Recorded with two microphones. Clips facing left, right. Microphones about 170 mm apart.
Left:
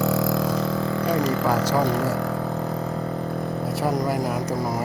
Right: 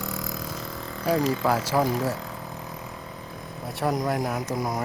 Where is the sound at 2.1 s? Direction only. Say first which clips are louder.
Left 9 dB; 70° left (ahead or behind).